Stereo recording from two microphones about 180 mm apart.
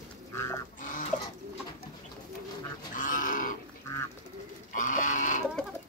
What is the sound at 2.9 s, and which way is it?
Pig, 45° left (ahead or behind).